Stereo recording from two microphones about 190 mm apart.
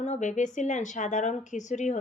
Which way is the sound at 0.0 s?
40° left (ahead or behind).